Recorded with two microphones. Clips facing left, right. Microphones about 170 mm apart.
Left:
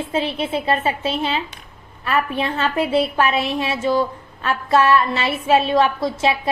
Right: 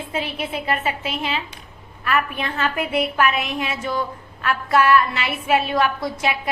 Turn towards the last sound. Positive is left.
turn(degrees=30)  # may be behind; listen again after turning